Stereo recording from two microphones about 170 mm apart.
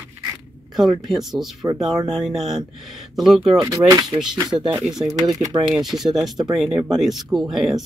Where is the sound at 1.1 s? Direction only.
Centre (ahead or behind).